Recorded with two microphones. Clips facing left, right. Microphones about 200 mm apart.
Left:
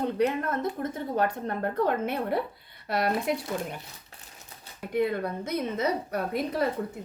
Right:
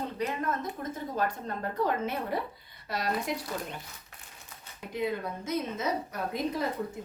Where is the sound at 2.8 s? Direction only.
60° left (ahead or behind).